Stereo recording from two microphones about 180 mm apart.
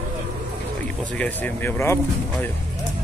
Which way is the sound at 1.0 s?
5° left (ahead or behind).